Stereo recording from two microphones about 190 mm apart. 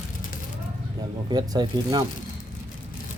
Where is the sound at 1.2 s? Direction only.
20° right (ahead or behind).